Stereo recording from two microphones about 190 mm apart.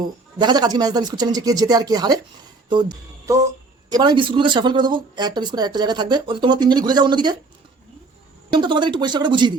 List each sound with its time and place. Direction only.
0.3 s speech: 20° right (ahead or behind)
8.5 s speech: 25° right (ahead or behind)